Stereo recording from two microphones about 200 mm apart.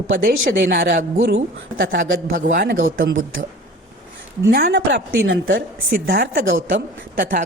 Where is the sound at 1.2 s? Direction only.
65° right (ahead or behind).